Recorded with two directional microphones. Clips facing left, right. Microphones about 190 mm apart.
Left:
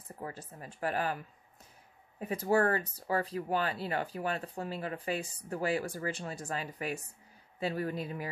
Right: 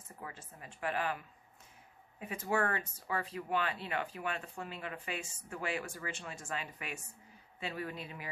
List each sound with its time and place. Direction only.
0.2 s speech: 40° left (ahead or behind)